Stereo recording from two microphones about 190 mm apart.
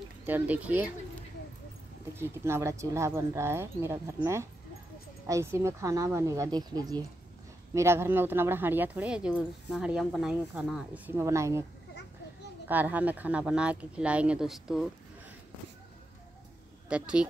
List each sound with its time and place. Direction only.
0.2 s speech: 10° right (ahead or behind)
2.1 s speech: 15° right (ahead or behind)
12.6 s speech: 10° right (ahead or behind)
16.9 s speech: 5° right (ahead or behind)